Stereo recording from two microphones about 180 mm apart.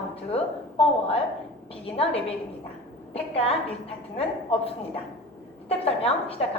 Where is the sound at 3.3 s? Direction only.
35° left (ahead or behind).